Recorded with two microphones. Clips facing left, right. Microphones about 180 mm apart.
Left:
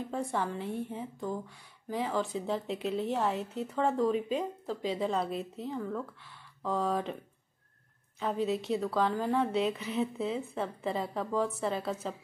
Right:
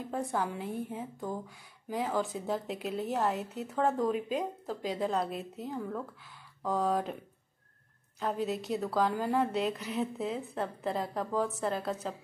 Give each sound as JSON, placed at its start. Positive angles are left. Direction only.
{"t": 0.1, "sound": "a woman's voice", "side_deg": 0}
{"t": 8.2, "sound": "a woman's voice", "side_deg": 0}